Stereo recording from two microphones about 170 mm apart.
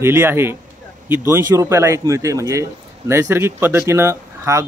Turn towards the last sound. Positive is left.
turn(degrees=-15)  # may be behind; listen again after turning